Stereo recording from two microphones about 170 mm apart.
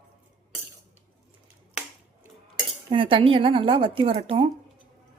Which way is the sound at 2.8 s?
30° right (ahead or behind).